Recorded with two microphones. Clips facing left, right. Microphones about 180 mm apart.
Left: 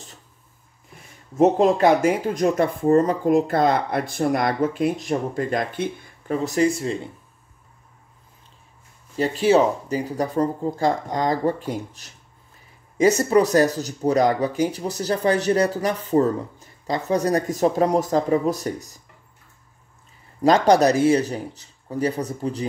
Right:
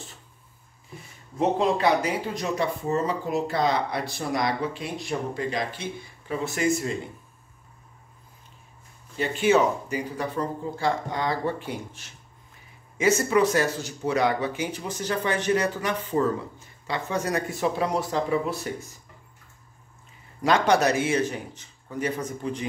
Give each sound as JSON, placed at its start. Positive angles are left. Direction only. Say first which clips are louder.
{"t": 1.3, "sound": "speech", "louder": "left 6 dB", "side_deg": 45}
{"t": 9.1, "sound": "speech", "louder": "left 4 dB", "side_deg": 35}
{"t": 20.4, "sound": "speech", "louder": "left 5 dB", "side_deg": 35}